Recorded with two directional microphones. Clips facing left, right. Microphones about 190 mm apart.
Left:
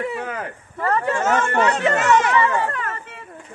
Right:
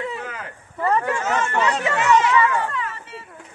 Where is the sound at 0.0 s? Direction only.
60° left (ahead or behind).